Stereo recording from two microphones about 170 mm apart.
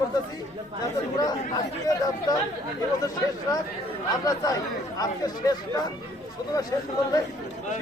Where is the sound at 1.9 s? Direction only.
20° left (ahead or behind).